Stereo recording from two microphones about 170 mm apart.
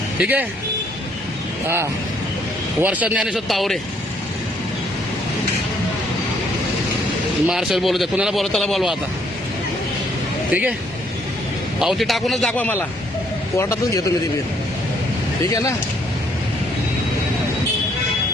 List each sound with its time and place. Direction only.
0.2 s speech: 10° right (ahead or behind)
1.6 s speech: 15° right (ahead or behind); by 3.8 s centre (ahead or behind)
7.4 s speech: centre (ahead or behind)
10.5 s speech: 10° right (ahead or behind)
11.8 s a man's voice: centre (ahead or behind); by 14.0 s 15° left (ahead or behind)